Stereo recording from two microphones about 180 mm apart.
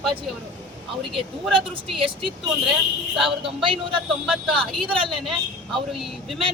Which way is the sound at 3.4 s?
30° right (ahead or behind).